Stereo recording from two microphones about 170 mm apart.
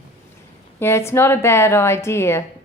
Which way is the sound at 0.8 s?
15° left (ahead or behind).